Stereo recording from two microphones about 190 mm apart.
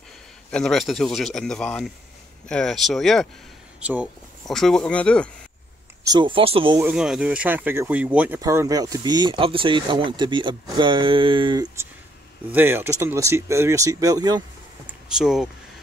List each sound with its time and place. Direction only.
0.5 s speech: 5° left (ahead or behind)
6.0 s speech: 25° right (ahead or behind)
6.8 s speech: 5° right (ahead or behind); by 11.8 s 20° right (ahead or behind)
12.4 s speech: 10° right (ahead or behind)
14.9 s speech: 5° right (ahead or behind)